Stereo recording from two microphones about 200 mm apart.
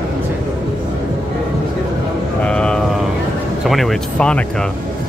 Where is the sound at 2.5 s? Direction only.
5° left (ahead or behind).